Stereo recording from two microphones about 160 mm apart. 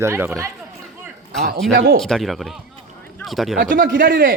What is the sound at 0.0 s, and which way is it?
Speech, 15° right (ahead or behind).